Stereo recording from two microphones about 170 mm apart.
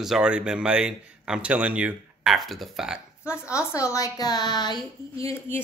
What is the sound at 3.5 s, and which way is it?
A woman's voice, 15° left (ahead or behind).